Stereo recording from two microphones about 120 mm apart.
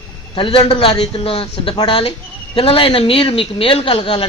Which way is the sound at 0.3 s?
45° left (ahead or behind).